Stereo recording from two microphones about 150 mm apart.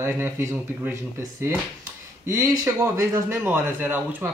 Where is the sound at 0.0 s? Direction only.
15° right (ahead or behind).